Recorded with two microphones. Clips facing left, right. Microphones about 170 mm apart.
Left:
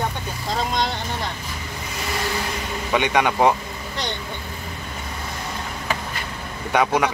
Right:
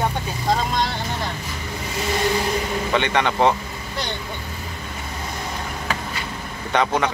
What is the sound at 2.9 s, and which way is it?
Speech, 10° left (ahead or behind).